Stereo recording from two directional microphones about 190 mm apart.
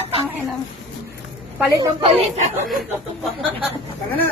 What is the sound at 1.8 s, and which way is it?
Speech, 30° right (ahead or behind).